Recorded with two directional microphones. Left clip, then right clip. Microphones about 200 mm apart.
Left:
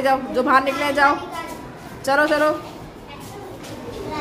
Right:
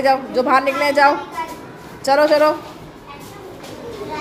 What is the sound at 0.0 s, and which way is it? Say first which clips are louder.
A woman's voice: right 3 dB; 5° right (ahead or behind).